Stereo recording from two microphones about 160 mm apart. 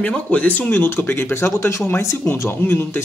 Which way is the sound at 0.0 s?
10° left (ahead or behind).